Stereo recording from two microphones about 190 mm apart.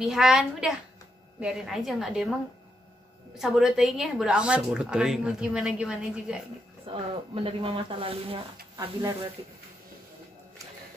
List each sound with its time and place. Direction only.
0.0 s a woman's voice: centre (ahead or behind)
3.3 s a woman's voice: centre (ahead or behind)
6.9 s speech: 30° right (ahead or behind)